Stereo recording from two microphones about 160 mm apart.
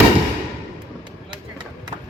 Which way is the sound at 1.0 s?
30° right (ahead or behind).